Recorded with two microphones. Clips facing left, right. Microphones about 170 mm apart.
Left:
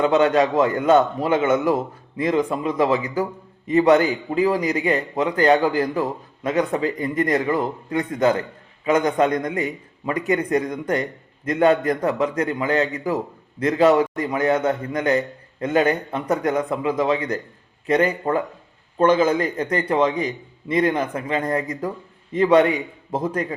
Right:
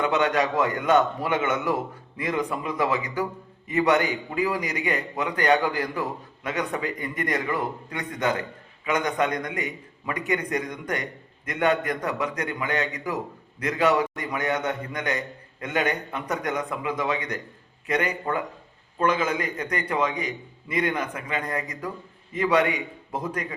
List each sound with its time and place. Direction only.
0.0 s a man's voice: 30° left (ahead or behind)